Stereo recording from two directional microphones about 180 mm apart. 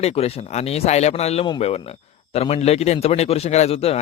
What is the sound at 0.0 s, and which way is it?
Speech, 35° left (ahead or behind).